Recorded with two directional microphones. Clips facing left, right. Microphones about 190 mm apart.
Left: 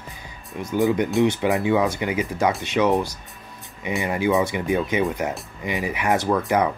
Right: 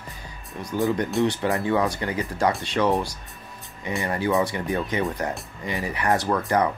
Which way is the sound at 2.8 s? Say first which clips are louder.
Left 2 dB; 15° left (ahead or behind).